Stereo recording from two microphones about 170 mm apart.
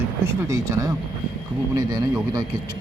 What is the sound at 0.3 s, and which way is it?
A man's voice, 20° right (ahead or behind).